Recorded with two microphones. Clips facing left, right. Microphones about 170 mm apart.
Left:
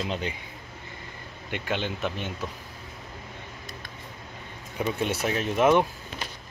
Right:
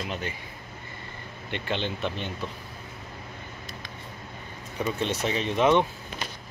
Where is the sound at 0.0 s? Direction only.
20° left (ahead or behind).